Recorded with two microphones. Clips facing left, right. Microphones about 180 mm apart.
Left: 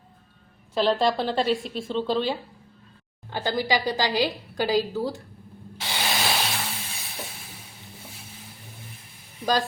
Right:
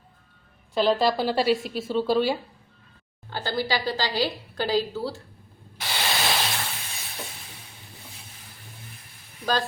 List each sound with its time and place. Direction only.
0.7 s a woman's voice: centre (ahead or behind)
3.2 s a woman's voice: 15° left (ahead or behind)
6.0 s a sound: 5° left (ahead or behind)